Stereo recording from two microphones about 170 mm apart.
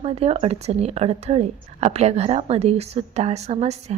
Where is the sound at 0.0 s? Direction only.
35° right (ahead or behind).